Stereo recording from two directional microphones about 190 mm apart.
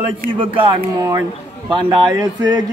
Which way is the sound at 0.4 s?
30° right (ahead or behind).